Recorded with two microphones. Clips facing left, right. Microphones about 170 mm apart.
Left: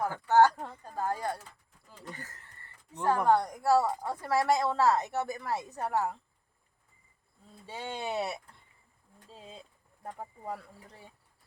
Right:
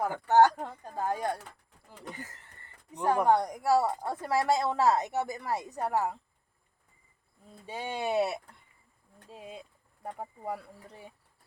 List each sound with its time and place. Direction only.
0.0 s speech: 20° right (ahead or behind)
7.7 s speech: 15° right (ahead or behind)